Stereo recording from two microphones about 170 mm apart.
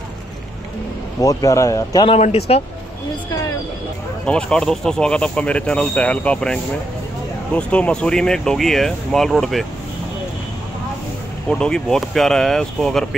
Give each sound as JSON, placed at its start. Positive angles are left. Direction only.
{"t": 1.2, "sound": "speech", "side_deg": 20}
{"t": 2.1, "sound": "speech", "side_deg": 40}
{"t": 4.3, "sound": "speech", "side_deg": 5}
{"t": 11.4, "sound": "speech", "side_deg": 5}